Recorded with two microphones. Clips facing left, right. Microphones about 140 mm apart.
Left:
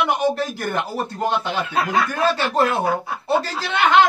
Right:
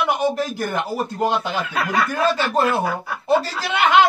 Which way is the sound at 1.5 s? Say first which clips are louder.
Left 1 dB; 25° left (ahead or behind).